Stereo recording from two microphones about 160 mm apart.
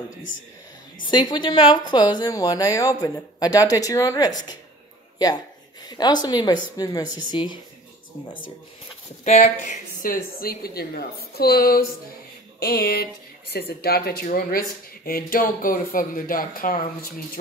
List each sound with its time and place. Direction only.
1.1 s a woman's voice: 30° left (ahead or behind)
5.9 s a woman's voice: 25° left (ahead or behind)
9.2 s speech: 45° left (ahead or behind)
10.0 s speech: 65° left (ahead or behind)